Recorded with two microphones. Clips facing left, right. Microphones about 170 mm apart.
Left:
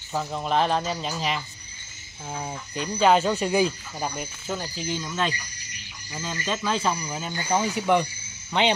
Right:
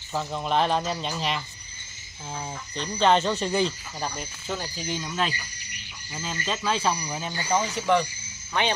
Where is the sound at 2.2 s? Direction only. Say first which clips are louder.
Left 2 dB; 15° left (ahead or behind).